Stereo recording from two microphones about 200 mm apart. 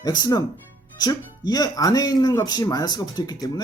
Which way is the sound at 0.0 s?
20° left (ahead or behind).